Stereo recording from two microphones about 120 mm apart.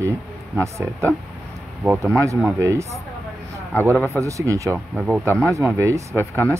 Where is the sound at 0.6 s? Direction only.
25° right (ahead or behind).